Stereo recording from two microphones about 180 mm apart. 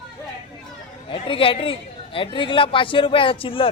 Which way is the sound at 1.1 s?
30° left (ahead or behind).